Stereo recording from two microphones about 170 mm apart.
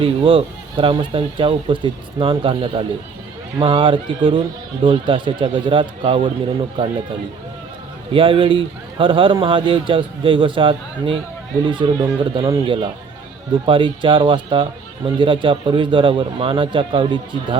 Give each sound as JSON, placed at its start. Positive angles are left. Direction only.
{"t": 0.0, "sound": "speech", "side_deg": -30}
{"t": 8.1, "sound": "speech", "side_deg": -30}